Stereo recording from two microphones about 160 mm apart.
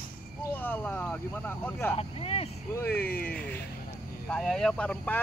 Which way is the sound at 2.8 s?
10° left (ahead or behind).